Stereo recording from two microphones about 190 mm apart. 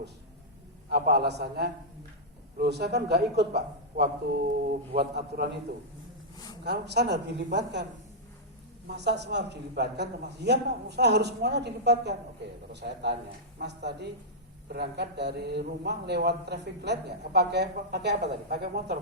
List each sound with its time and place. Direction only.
0.9 s a man's voice: 55° right (ahead or behind)
6.7 s a man's voice: 60° right (ahead or behind)
8.9 s a man's voice: 65° right (ahead or behind)